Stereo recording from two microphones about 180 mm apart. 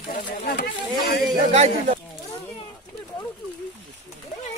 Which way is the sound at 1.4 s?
35° right (ahead or behind).